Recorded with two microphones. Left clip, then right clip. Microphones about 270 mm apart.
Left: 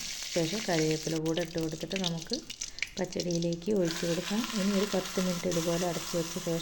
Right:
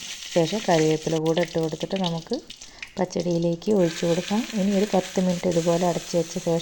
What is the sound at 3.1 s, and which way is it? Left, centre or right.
Frying, right.